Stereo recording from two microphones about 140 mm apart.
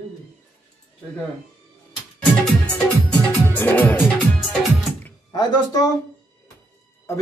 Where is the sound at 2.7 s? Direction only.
15° left (ahead or behind).